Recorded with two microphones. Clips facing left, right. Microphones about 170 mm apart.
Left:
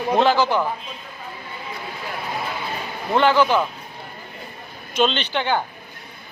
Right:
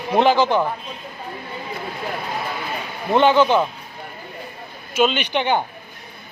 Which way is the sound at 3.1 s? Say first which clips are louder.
Right 2 dB; 20° right (ahead or behind).